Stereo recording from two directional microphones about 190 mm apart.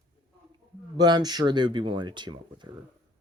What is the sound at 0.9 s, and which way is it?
Speech, 20° right (ahead or behind).